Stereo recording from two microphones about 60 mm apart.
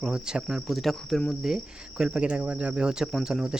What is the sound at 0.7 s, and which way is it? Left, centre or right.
Speech, centre.